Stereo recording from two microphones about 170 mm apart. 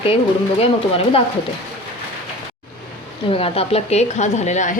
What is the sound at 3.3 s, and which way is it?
A woman's voice, 35° left (ahead or behind).